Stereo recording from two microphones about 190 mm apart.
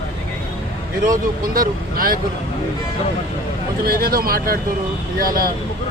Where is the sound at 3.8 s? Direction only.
50° right (ahead or behind).